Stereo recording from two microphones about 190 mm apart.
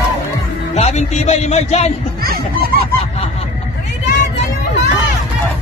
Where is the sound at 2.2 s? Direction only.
50° right (ahead or behind).